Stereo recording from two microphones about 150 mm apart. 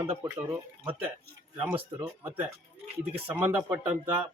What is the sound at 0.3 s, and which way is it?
Speech, 20° right (ahead or behind).